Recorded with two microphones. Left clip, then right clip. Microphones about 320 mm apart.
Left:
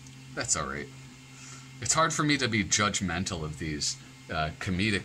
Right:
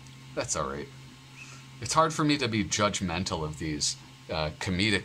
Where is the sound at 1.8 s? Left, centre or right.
Centre.